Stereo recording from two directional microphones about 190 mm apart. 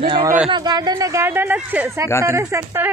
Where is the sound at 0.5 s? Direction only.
20° right (ahead or behind).